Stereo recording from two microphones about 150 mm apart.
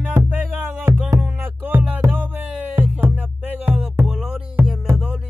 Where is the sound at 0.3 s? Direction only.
15° right (ahead or behind).